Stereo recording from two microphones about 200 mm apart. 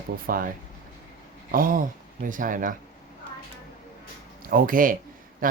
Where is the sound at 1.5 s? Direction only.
45° right (ahead or behind).